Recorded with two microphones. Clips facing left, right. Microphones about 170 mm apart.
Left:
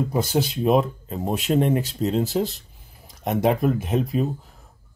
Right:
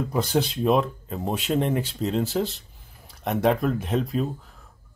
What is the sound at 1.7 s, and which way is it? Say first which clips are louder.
Speech: left 3 dB; 40° left (ahead or behind).